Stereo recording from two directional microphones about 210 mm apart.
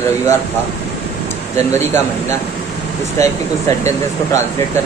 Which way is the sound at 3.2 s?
15° left (ahead or behind).